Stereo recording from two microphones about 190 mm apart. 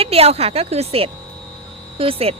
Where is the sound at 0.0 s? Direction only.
30° right (ahead or behind).